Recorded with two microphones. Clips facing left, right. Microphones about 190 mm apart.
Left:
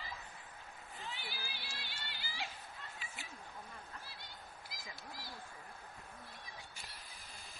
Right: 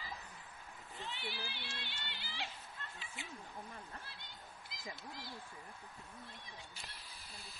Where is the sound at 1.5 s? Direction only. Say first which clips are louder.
Right 1 dB; 25° right (ahead or behind).